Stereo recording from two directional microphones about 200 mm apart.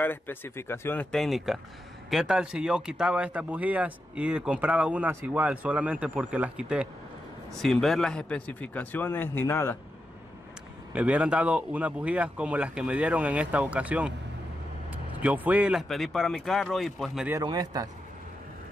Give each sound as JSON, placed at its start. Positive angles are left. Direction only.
{"t": 0.0, "sound": "a man's voice", "side_deg": 10}
{"t": 10.9, "sound": "speech", "side_deg": -5}
{"t": 17.4, "sound": "a man's voice", "side_deg": -20}